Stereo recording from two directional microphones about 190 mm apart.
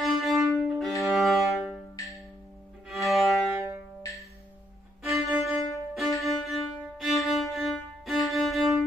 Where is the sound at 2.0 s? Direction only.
15° left (ahead or behind).